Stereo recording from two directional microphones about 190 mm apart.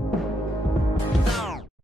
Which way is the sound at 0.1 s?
Centre (ahead or behind).